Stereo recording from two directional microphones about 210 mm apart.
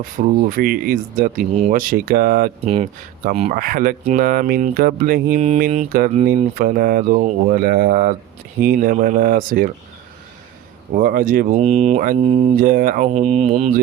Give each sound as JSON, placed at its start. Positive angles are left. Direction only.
{"t": 0.2, "sound": "speech", "side_deg": -40}
{"t": 2.6, "sound": "speech", "side_deg": -30}
{"t": 3.5, "sound": "speech", "side_deg": -45}
{"t": 10.9, "sound": "speech", "side_deg": -40}